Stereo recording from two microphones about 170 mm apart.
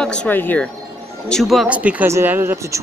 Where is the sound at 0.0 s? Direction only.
5° left (ahead or behind).